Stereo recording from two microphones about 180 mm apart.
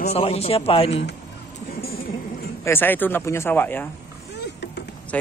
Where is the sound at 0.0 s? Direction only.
35° left (ahead or behind).